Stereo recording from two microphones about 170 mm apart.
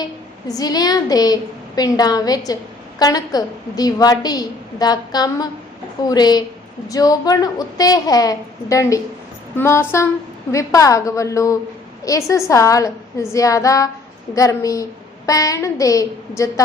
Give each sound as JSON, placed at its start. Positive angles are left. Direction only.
{"t": 0.0, "sound": "a woman's voice", "side_deg": 20}